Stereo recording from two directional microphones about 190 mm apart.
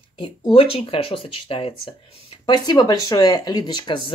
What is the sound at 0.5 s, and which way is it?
Speech, 30° left (ahead or behind).